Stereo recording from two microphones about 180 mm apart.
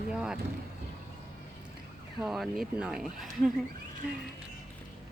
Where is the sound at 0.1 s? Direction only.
5° right (ahead or behind).